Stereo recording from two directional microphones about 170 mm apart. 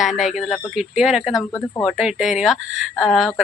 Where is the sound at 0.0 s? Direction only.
Centre (ahead or behind).